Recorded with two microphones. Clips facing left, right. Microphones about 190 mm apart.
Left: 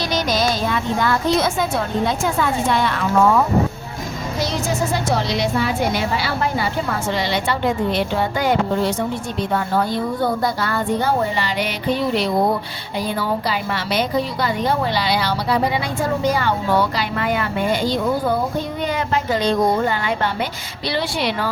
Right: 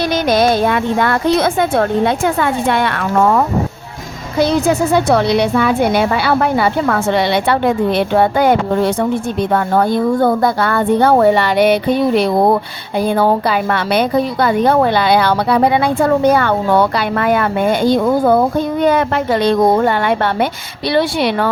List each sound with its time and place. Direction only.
0.1 s a woman's voice: 55° right (ahead or behind)